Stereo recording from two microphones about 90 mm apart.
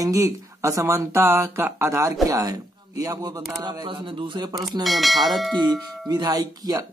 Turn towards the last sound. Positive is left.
turn(degrees=-45)  # may be behind; listen again after turning